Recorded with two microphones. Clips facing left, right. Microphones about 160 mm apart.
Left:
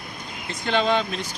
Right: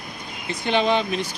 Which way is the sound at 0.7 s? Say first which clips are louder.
Right 1 dB; 15° right (ahead or behind).